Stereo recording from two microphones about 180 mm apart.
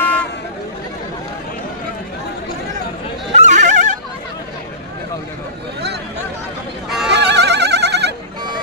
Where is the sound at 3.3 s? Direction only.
40° right (ahead or behind).